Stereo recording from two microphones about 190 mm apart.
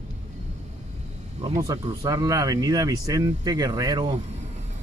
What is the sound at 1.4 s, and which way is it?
Speech, 20° right (ahead or behind).